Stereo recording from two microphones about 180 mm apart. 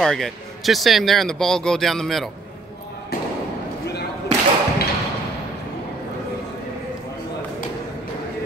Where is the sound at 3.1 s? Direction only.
60° left (ahead or behind).